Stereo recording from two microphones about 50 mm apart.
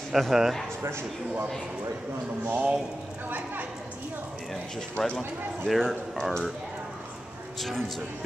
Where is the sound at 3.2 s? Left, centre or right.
Right.